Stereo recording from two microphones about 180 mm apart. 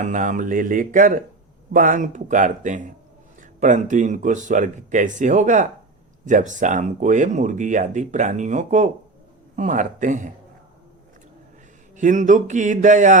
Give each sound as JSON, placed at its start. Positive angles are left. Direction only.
{"t": 0.0, "sound": "speech", "side_deg": -45}
{"t": 11.9, "sound": "speech", "side_deg": -45}